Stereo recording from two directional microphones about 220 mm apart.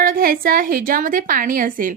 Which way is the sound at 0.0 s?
40° right (ahead or behind).